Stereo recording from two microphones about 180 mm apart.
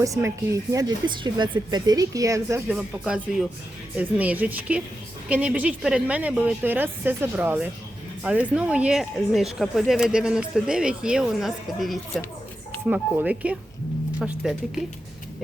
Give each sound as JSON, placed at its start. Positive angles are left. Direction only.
{"t": 0.0, "sound": "speech", "side_deg": -15}
{"t": 2.6, "sound": "speech", "side_deg": -5}